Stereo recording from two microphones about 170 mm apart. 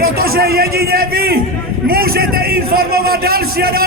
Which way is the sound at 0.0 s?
60° right (ahead or behind).